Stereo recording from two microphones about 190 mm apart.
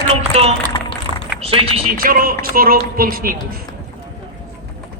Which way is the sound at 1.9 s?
50° right (ahead or behind).